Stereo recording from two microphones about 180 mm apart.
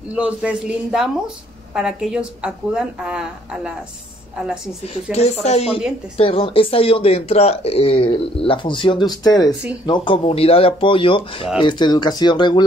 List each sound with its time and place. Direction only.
0.1 s speech: 5° right (ahead or behind)
5.1 s speech: 35° left (ahead or behind)